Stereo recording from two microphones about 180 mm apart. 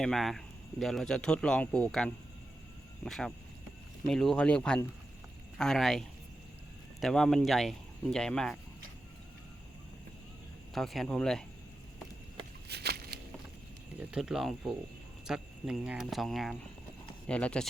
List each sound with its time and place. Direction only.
0.0 s speech: centre (ahead or behind)
10.8 s speech: centre (ahead or behind)
12.6 s a sound: 65° right (ahead or behind)
14.1 s speech: 5° right (ahead or behind)